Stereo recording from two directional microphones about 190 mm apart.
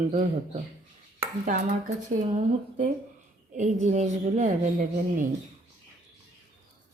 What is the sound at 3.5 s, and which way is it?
Speech, 40° right (ahead or behind).